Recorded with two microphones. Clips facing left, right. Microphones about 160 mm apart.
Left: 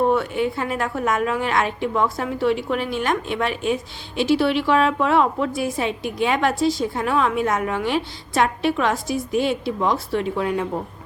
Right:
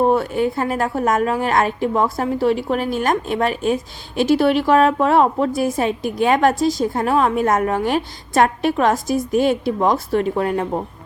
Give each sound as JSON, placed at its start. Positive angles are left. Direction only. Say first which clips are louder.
{"t": 0.0, "sound": "a woman's voice", "louder": "right 3 dB", "side_deg": -40}